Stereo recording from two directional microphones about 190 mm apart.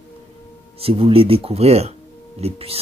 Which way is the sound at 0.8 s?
30° right (ahead or behind).